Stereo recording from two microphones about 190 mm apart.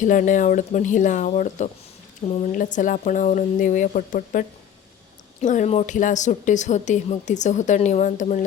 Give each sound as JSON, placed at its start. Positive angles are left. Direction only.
{"t": 0.0, "sound": "a woman's voice", "side_deg": 45}